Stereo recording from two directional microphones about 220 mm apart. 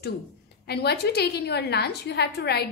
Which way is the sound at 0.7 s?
45° left (ahead or behind).